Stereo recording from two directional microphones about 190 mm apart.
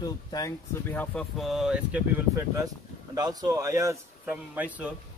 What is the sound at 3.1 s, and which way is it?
A man's voice, 20° right (ahead or behind).